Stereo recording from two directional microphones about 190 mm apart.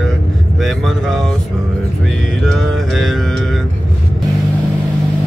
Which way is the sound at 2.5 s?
Centre (ahead or behind).